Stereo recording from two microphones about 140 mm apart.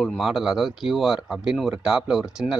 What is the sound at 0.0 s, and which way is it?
Speech, centre (ahead or behind).